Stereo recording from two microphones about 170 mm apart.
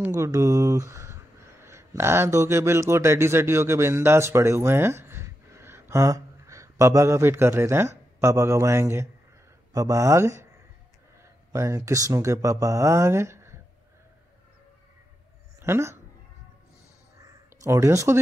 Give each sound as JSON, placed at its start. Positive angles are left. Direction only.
{"t": 0.0, "sound": "speech", "side_deg": -20}
{"t": 11.5, "sound": "speech", "side_deg": -20}
{"t": 15.6, "sound": "speech", "side_deg": -15}
{"t": 17.2, "sound": "a sound", "side_deg": -15}